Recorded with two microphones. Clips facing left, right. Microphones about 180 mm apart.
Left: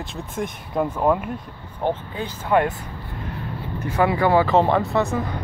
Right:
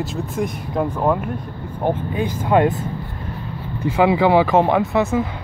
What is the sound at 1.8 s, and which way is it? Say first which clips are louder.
Speech: right 4 dB; 15° right (ahead or behind).